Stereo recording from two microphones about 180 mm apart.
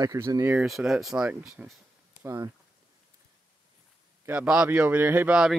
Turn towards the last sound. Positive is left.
turn(degrees=-5)  # may be behind; listen again after turning